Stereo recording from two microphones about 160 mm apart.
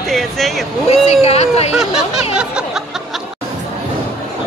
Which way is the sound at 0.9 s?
40° left (ahead or behind).